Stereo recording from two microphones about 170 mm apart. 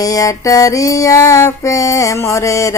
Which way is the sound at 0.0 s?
20° left (ahead or behind).